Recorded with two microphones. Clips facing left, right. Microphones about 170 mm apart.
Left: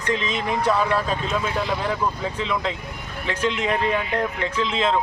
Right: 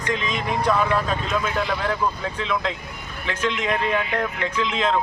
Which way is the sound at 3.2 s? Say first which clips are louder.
Left 1 dB; 35° left (ahead or behind).